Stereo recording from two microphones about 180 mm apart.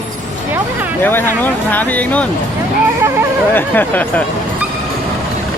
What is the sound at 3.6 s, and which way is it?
Speech, 10° left (ahead or behind).